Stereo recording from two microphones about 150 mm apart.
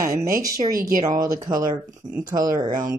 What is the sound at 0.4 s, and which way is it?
Speech, 25° right (ahead or behind).